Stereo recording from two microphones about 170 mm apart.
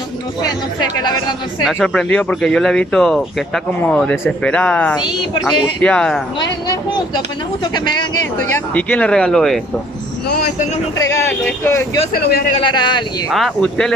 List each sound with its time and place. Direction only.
1.7 s speech: 5° left (ahead or behind)
7.6 s speech: 25° left (ahead or behind); by 9.6 s 5° left (ahead or behind)
10.2 s speech: 60° left (ahead or behind)
11.0 s speech: 15° left (ahead or behind)
12.1 s speech: 65° left (ahead or behind)
12.6 s a man's voice: 25° left (ahead or behind)
13.3 s speech: centre (ahead or behind)